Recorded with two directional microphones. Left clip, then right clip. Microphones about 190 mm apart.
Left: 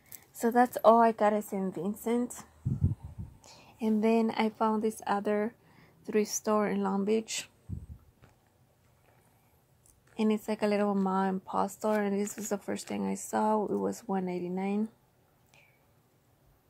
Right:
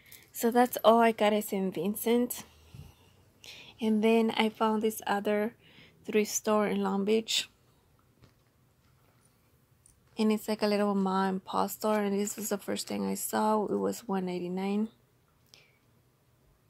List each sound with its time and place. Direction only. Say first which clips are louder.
0.4 s a woman's voice: even; centre (ahead or behind)
10.1 s speech: right 1 dB; 5° right (ahead or behind)